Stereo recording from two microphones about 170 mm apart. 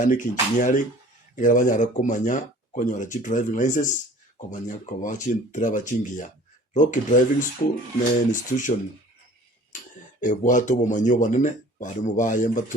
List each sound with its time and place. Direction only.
0.0 s speech: 50° left (ahead or behind)
10.2 s speech: 50° left (ahead or behind)